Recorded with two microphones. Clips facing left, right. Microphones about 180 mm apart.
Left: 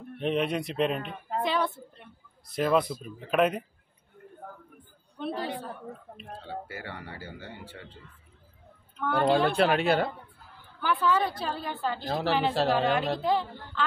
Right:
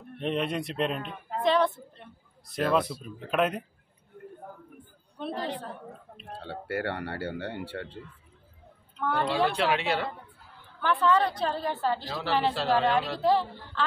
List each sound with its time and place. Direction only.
0.2 s speech: centre (ahead or behind)
5.2 s speech: centre (ahead or behind)
6.4 s speech: 70° right (ahead or behind)
9.5 s speech: 45° left (ahead or behind)
10.8 s speech: 5° left (ahead or behind)